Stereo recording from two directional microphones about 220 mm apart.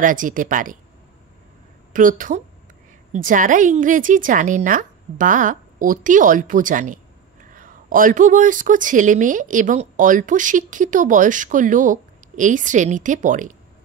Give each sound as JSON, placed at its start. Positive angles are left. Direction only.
{"t": 0.0, "sound": "a woman's voice", "side_deg": -35}
{"t": 2.0, "sound": "a woman's voice", "side_deg": -40}